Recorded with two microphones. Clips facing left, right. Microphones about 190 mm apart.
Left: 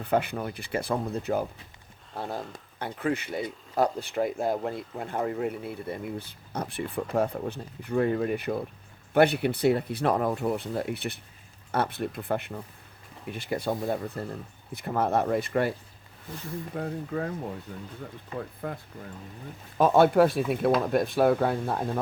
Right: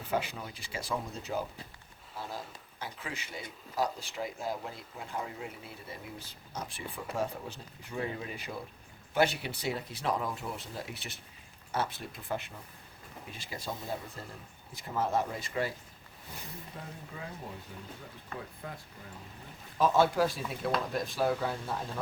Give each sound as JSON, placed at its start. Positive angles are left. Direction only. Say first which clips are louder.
{"t": 0.0, "sound": "speech", "louder": "left 7 dB", "side_deg": 60}
{"t": 16.7, "sound": "speech", "louder": "left 16 dB", "side_deg": 60}
{"t": 18.6, "sound": "speech", "louder": "left 10 dB", "side_deg": 55}
{"t": 19.8, "sound": "speech", "louder": "left 7 dB", "side_deg": 60}